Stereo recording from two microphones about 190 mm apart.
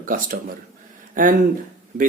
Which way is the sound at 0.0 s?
45° right (ahead or behind).